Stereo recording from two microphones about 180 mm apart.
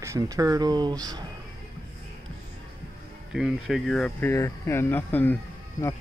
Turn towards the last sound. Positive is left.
turn(degrees=15)  # may be behind; listen again after turning